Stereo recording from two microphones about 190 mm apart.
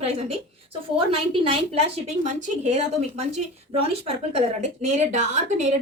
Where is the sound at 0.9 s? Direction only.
30° right (ahead or behind).